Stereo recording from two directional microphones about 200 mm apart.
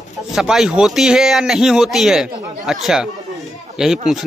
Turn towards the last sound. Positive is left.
turn(degrees=0)  # may be behind; listen again after turning